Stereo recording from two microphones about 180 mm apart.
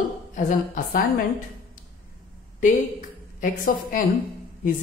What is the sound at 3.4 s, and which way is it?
Speech, 50° left (ahead or behind).